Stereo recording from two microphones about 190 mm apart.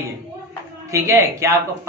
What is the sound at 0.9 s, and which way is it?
Speech, 15° right (ahead or behind).